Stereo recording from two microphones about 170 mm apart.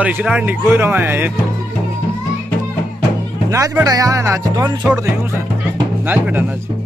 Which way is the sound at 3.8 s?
20° right (ahead or behind).